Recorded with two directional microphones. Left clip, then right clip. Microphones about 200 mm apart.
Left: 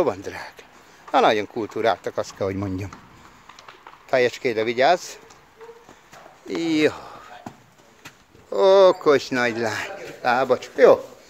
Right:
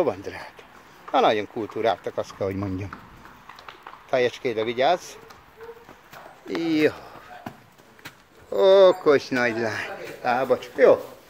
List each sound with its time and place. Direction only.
0.0 s speech: 20° left (ahead or behind)
4.2 s speech: 90° left
4.6 s speech: 25° left (ahead or behind)
6.6 s speech: 15° left (ahead or behind)